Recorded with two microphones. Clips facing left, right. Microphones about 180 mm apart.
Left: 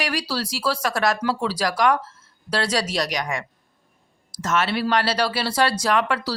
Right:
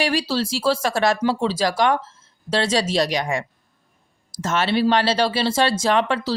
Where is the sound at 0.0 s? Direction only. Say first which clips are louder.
Right 5 dB; 25° right (ahead or behind).